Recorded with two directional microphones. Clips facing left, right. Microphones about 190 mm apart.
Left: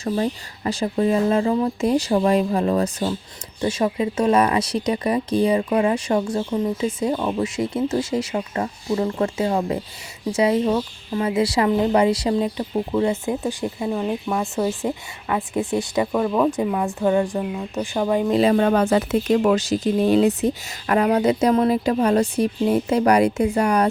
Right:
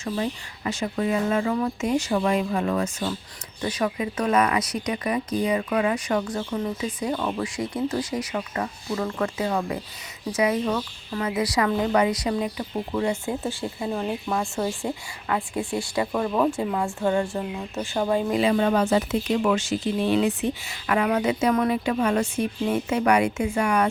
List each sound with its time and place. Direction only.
0.0 s speech: 35° left (ahead or behind); by 16.0 s 20° left (ahead or behind)
16.1 s speech: 5° left (ahead or behind)
16.5 s a woman's voice: 15° left (ahead or behind)
18.3 s speech: 45° left (ahead or behind)
19.4 s speech: 40° left (ahead or behind)